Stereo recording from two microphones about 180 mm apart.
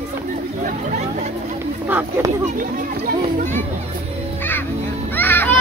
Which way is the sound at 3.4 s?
45° right (ahead or behind).